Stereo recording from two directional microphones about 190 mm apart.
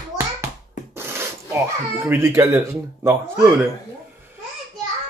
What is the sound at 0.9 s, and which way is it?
Wood, 15° right (ahead or behind).